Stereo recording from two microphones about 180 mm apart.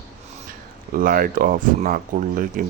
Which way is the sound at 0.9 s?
50° right (ahead or behind).